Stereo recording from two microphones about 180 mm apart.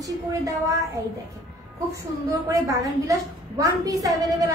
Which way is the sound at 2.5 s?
20° right (ahead or behind).